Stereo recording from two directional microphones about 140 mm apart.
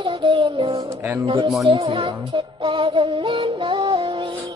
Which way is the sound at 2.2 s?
35° right (ahead or behind).